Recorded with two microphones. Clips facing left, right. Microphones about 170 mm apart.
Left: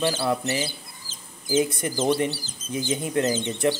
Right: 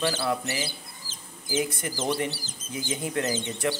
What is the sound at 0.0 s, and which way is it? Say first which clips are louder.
Speech: left 3 dB; 20° left (ahead or behind).